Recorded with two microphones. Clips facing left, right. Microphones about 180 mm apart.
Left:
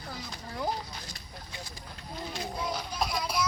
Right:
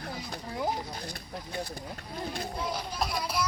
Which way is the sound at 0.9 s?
55° right (ahead or behind).